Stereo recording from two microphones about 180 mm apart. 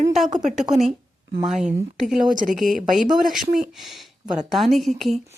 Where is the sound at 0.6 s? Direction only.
Centre (ahead or behind).